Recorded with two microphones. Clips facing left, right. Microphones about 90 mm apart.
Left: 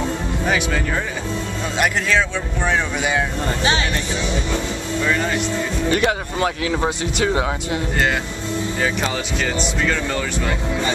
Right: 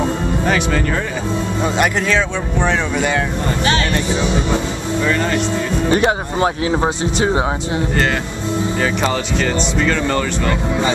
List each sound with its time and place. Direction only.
0.5 s speech: 5° left (ahead or behind)
5.0 s speech: 5° left (ahead or behind)
5.9 s speech: 30° right (ahead or behind)
8.8 s speech: centre (ahead or behind)